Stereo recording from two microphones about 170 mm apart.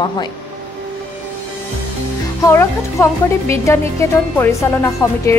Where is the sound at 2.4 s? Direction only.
15° left (ahead or behind).